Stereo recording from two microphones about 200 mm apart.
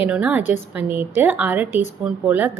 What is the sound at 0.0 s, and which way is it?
Speech, 5° right (ahead or behind).